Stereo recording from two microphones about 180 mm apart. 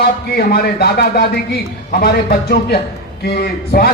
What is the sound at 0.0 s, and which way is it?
A man's voice, 55° left (ahead or behind).